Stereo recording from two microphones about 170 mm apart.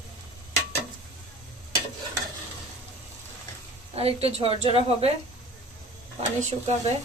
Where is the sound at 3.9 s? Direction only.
35° right (ahead or behind).